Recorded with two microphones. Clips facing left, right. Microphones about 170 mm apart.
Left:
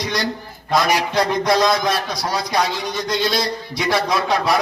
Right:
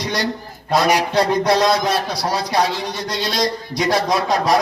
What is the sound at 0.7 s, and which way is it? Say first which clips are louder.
A man's voice: right 2 dB; 30° right (ahead or behind).